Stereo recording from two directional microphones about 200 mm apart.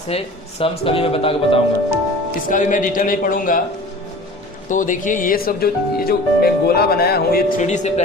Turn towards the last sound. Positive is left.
turn(degrees=35)  # may be behind; listen again after turning